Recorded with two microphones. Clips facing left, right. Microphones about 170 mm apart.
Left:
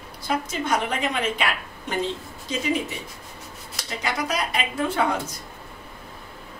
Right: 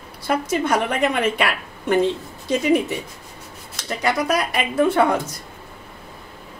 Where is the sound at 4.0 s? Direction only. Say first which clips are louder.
Right 6 dB; 60° right (ahead or behind).